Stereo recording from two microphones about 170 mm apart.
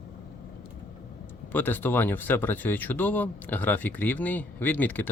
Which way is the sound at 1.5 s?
10° left (ahead or behind).